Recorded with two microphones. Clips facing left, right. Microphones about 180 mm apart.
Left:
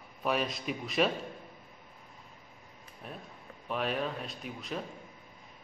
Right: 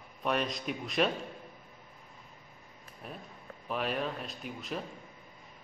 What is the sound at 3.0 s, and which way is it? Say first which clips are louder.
A man's voice: even; centre (ahead or behind).